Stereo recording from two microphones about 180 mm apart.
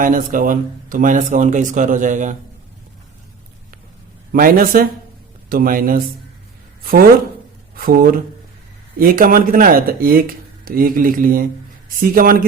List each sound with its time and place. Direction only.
0.0 s speech: 50° right (ahead or behind)
4.3 s speech: 50° right (ahead or behind)
7.8 s speech: 55° right (ahead or behind)